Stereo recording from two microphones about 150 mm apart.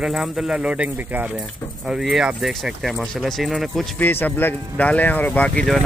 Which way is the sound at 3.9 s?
10° left (ahead or behind).